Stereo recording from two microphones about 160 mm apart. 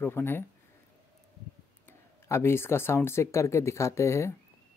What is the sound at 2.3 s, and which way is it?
Speech, 15° left (ahead or behind).